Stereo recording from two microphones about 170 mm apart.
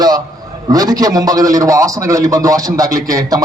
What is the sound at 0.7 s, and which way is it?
A man's voice, 20° right (ahead or behind).